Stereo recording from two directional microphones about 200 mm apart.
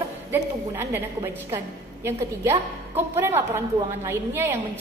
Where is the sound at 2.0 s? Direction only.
10° right (ahead or behind).